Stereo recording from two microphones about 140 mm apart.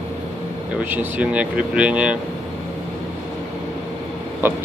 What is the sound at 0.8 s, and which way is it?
Speech, 10° right (ahead or behind).